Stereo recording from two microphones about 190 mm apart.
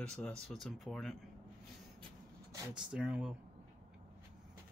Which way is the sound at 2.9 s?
5° right (ahead or behind).